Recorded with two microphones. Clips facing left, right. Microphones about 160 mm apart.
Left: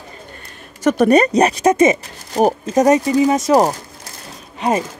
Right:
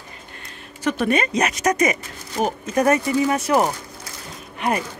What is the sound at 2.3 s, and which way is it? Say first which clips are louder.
Zipper: left 8 dB; 40° left (ahead or behind).